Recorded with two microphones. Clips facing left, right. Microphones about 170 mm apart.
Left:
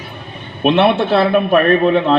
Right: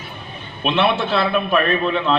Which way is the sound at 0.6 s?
55° left (ahead or behind).